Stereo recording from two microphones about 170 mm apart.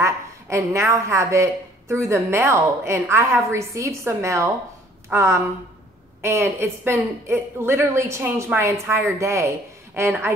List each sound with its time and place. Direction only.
0.0 s a woman's voice: 15° right (ahead or behind)